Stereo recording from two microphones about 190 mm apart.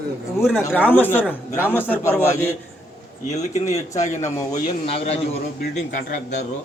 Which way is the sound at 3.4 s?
40° left (ahead or behind).